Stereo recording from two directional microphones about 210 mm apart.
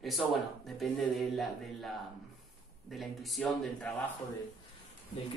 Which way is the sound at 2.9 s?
Centre (ahead or behind).